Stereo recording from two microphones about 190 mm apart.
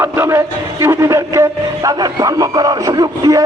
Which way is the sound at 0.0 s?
10° right (ahead or behind).